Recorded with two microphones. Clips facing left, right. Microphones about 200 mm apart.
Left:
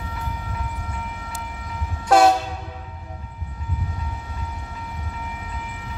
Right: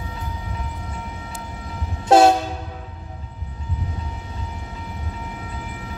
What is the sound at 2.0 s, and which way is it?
Train, 25° right (ahead or behind).